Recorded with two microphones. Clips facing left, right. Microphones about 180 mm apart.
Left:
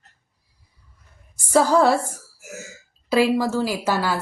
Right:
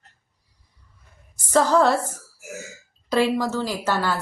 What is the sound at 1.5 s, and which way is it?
Speech, 10° left (ahead or behind).